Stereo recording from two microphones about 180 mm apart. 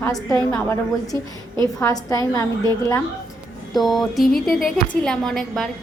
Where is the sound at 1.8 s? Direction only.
20° left (ahead or behind).